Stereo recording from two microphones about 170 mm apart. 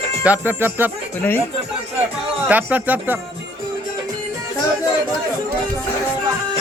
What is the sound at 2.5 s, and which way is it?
Speech, 10° right (ahead or behind).